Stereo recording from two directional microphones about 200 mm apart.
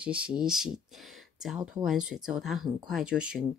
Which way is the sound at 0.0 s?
5° right (ahead or behind).